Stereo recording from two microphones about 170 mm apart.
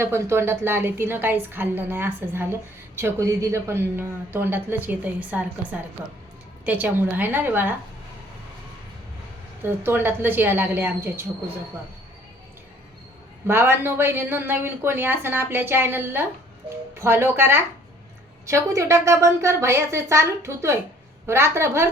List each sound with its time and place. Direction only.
0.0 s a woman's voice: 15° right (ahead or behind)
9.6 s a woman's voice: 15° right (ahead or behind)
13.5 s a woman's voice: 15° right (ahead or behind)